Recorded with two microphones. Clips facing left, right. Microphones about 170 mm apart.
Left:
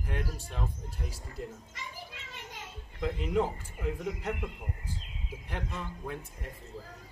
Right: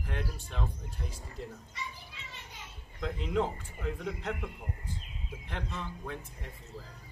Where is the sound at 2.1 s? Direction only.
50° left (ahead or behind).